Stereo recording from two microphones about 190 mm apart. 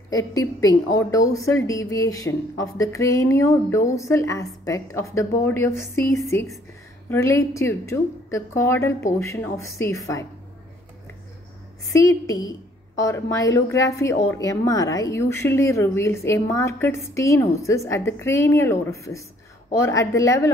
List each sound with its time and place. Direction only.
0.1 s a woman's voice: 20° left (ahead or behind)
11.9 s a woman's voice: 15° left (ahead or behind)